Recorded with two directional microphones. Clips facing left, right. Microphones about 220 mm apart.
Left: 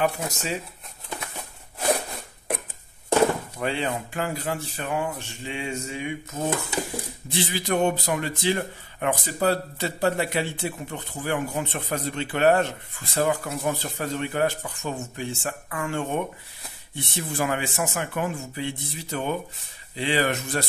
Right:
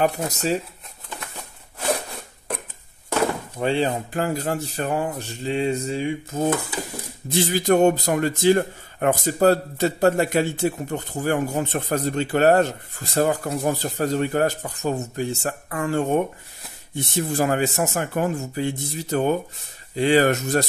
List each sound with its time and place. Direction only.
0.0 s speech: 40° right (ahead or behind)
3.5 s speech: 30° right (ahead or behind)
7.2 s a man's voice: 45° right (ahead or behind)